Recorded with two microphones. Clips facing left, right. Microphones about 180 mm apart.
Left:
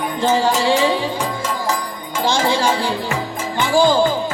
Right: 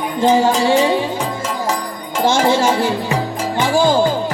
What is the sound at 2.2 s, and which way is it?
Music, 20° right (ahead or behind).